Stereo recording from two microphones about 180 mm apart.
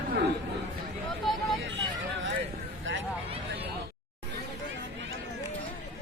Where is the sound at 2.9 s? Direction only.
90° right.